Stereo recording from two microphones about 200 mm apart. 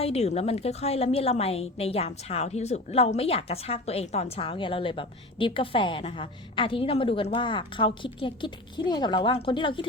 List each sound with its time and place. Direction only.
0.0 s a woman's voice: 30° left (ahead or behind)